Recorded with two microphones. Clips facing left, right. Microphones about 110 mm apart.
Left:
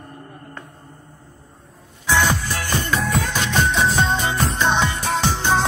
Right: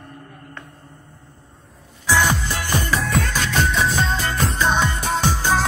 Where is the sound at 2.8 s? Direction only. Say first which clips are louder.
Left 1 dB; centre (ahead or behind).